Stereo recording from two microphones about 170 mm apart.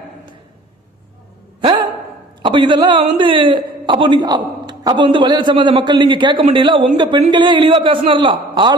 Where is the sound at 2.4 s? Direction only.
30° right (ahead or behind).